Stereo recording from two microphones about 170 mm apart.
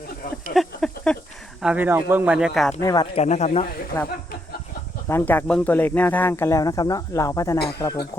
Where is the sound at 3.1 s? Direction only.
40° left (ahead or behind).